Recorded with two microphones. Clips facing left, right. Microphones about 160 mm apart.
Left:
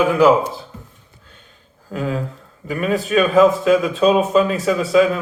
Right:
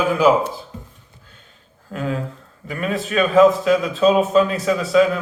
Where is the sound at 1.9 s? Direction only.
5° left (ahead or behind).